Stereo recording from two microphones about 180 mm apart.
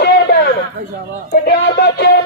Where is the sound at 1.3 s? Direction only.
60° left (ahead or behind).